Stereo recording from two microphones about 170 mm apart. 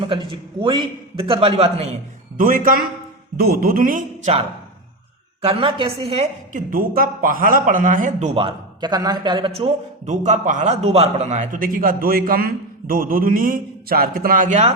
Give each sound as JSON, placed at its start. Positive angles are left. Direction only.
{"t": 0.0, "sound": "a man's voice", "side_deg": -30}
{"t": 2.4, "sound": "a man's voice", "side_deg": -55}
{"t": 6.7, "sound": "speech", "side_deg": -60}